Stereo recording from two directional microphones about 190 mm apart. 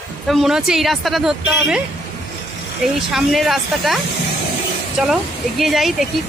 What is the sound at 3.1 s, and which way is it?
Speech, centre (ahead or behind).